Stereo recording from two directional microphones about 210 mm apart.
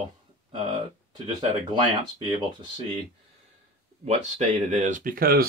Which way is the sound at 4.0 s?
30° right (ahead or behind).